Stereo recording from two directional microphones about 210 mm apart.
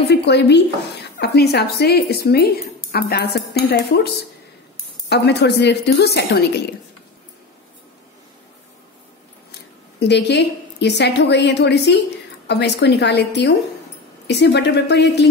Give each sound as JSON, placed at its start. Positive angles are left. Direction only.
{"t": 0.1, "sound": "speech", "side_deg": 55}
{"t": 9.5, "sound": "a woman's voice", "side_deg": 55}